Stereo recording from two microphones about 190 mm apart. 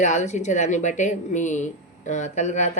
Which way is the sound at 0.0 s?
40° left (ahead or behind).